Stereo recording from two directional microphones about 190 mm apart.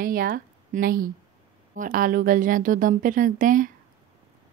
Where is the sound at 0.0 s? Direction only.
50° right (ahead or behind).